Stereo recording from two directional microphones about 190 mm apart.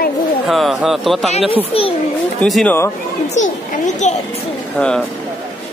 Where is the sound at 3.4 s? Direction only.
40° left (ahead or behind).